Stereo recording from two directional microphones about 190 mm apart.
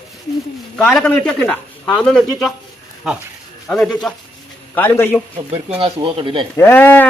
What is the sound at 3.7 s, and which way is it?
A man's voice, 5° left (ahead or behind).